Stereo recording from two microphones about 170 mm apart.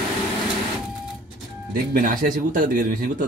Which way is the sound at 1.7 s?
55° right (ahead or behind).